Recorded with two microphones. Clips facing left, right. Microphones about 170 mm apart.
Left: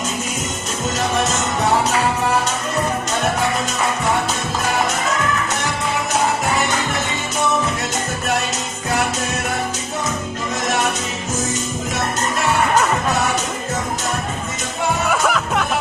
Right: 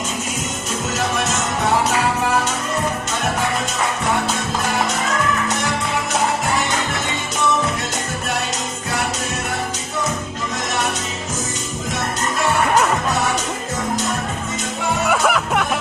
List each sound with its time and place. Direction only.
15.1 s music: centre (ahead or behind)